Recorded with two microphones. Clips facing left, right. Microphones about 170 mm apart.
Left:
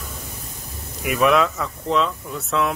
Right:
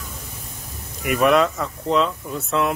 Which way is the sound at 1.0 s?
Centre (ahead or behind).